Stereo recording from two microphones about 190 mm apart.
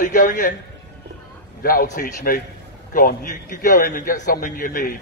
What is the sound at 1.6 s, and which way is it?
A man's voice, 45° left (ahead or behind).